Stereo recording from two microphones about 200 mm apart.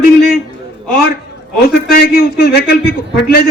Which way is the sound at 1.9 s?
50° left (ahead or behind).